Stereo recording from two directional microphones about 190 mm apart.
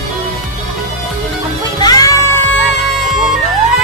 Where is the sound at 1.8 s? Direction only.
20° left (ahead or behind).